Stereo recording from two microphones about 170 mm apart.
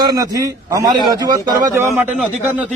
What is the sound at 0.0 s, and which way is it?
A man's voice, 25° right (ahead or behind).